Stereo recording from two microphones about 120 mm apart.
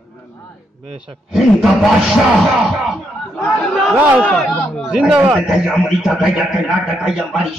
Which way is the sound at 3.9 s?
15° right (ahead or behind).